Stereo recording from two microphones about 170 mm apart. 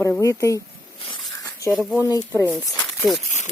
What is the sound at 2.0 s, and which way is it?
Speech, 20° left (ahead or behind).